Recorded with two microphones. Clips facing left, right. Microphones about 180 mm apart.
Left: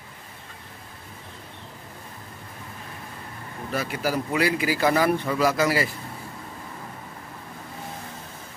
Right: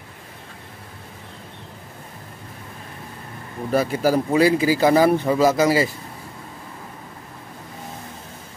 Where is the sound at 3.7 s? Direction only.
35° right (ahead or behind).